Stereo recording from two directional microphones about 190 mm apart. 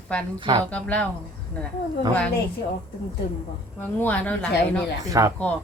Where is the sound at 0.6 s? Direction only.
5° left (ahead or behind).